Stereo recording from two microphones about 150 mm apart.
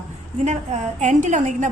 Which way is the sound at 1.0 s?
55° right (ahead or behind).